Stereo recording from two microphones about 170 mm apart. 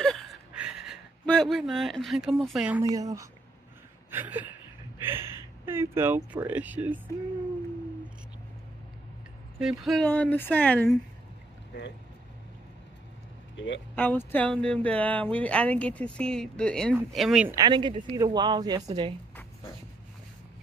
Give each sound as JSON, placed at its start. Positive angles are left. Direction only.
{"t": 0.0, "sound": "gasp", "side_deg": 0}
{"t": 1.2, "sound": "speech", "side_deg": 5}
{"t": 2.8, "sound": "a woman's voice", "side_deg": -20}
{"t": 4.1, "sound": "a sound", "side_deg": -10}
{"t": 5.0, "sound": "speech", "side_deg": -15}
{"t": 9.6, "sound": "speech", "side_deg": 0}
{"t": 13.9, "sound": "speech", "side_deg": 10}
{"t": 17.5, "sound": "a woman's voice", "side_deg": -25}